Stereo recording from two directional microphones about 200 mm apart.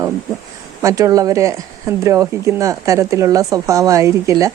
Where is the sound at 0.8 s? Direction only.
15° right (ahead or behind).